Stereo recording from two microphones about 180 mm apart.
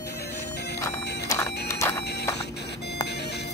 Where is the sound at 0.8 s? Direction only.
15° left (ahead or behind).